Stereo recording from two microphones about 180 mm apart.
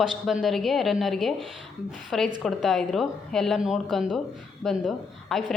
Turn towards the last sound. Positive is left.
turn(degrees=0)  # may be behind; listen again after turning